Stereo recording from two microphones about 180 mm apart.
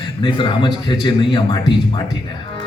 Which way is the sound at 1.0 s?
25° left (ahead or behind).